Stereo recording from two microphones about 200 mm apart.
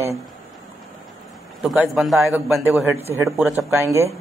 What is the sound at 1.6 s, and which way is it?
Speech, centre (ahead or behind).